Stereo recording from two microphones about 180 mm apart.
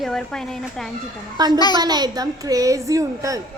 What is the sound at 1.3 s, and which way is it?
Speech, 25° right (ahead or behind).